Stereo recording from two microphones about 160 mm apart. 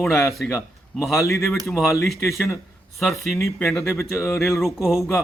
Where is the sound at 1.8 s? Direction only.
20° left (ahead or behind).